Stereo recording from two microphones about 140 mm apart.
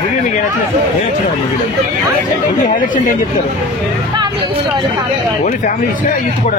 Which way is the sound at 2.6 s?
70° left (ahead or behind).